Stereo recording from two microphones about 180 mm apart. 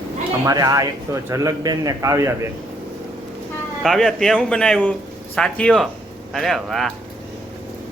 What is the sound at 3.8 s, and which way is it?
Speech, centre (ahead or behind).